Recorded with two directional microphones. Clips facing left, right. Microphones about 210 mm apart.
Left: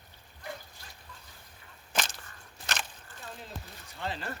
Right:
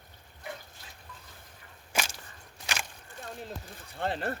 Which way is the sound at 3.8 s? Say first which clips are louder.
Right 6 dB; 55° right (ahead or behind).